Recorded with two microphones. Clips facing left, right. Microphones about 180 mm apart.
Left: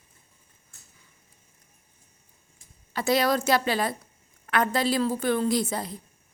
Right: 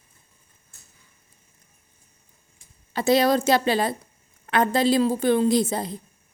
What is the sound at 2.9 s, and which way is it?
A woman's voice, 25° right (ahead or behind).